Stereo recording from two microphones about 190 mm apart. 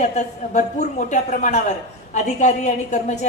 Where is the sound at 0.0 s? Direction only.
40° left (ahead or behind).